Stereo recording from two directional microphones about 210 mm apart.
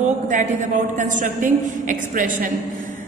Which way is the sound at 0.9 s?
35° right (ahead or behind).